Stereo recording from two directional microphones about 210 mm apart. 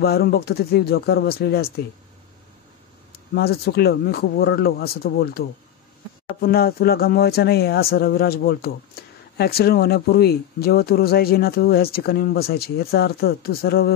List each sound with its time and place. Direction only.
0.0 s speech: 50° left (ahead or behind)
3.3 s speech: 50° left (ahead or behind)